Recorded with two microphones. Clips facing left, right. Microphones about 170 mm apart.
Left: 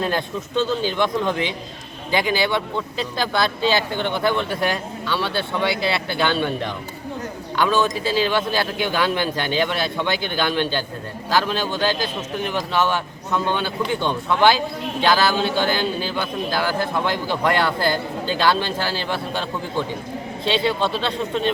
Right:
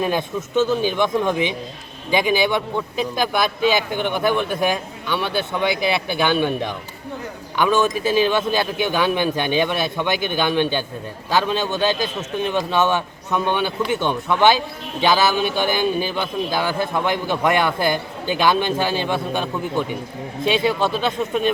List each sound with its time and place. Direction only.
0.0 s speech: 15° right (ahead or behind)
20.5 s speech: 15° right (ahead or behind)